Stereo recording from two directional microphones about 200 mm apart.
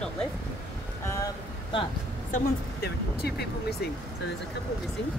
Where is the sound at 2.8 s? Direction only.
55° left (ahead or behind).